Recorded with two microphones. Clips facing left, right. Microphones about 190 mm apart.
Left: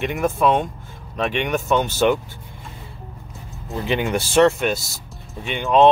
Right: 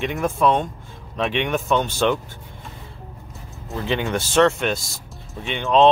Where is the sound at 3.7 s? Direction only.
10° left (ahead or behind).